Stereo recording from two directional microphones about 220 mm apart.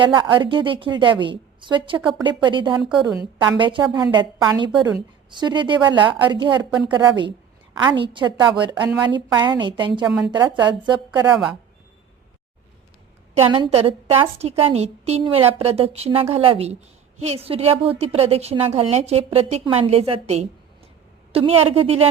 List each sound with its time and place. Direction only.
0.0 s a woman's voice: 20° right (ahead or behind)
2.8 s a woman's voice: centre (ahead or behind)
3.6 s a woman's voice: 20° right (ahead or behind)
11.3 s a woman's voice: 5° right (ahead or behind)
13.3 s a woman's voice: 25° right (ahead or behind)